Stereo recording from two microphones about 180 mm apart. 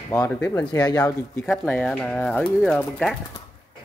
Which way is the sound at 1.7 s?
5° left (ahead or behind).